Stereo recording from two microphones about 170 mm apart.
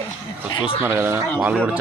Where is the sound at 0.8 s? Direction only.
15° right (ahead or behind).